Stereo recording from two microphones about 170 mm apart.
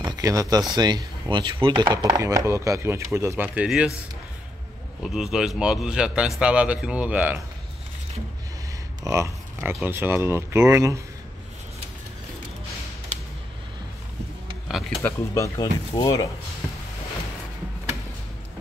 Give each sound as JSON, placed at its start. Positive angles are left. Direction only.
{"t": 0.0, "sound": "speech", "side_deg": -20}
{"t": 5.0, "sound": "speech", "side_deg": -5}
{"t": 9.0, "sound": "speech", "side_deg": -15}
{"t": 14.7, "sound": "a sound", "side_deg": 0}
{"t": 15.0, "sound": "speech", "side_deg": 15}